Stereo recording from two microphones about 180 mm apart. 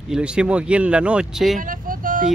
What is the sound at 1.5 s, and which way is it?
Vehicle, 50° right (ahead or behind).